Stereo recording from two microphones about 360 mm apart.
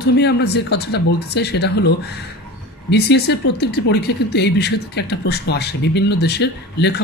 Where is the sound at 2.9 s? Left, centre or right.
Left.